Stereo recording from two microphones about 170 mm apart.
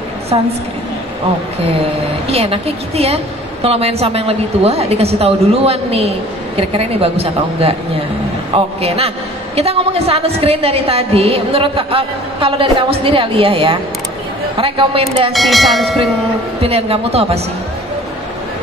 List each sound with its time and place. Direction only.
2.2 s a woman's voice: 35° right (ahead or behind)
15.3 s speech: centre (ahead or behind)
16.6 s a woman's voice: 35° right (ahead or behind)